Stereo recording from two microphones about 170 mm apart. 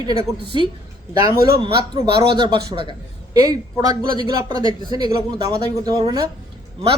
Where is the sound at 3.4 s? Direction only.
20° right (ahead or behind).